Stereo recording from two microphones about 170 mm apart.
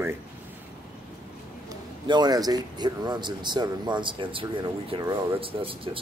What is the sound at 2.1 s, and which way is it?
Speech, 25° right (ahead or behind).